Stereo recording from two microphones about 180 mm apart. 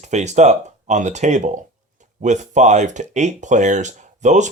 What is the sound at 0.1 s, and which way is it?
Speech, 40° right (ahead or behind).